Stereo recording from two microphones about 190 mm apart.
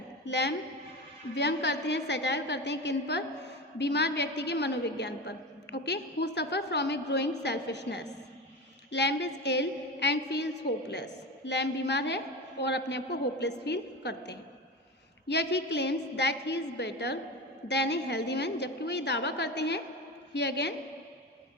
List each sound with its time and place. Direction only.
0.3 s a woman's voice: 65° left (ahead or behind)